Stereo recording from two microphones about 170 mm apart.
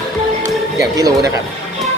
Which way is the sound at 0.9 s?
20° right (ahead or behind).